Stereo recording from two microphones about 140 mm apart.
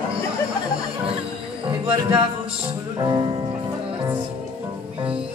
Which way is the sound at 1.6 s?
40° right (ahead or behind).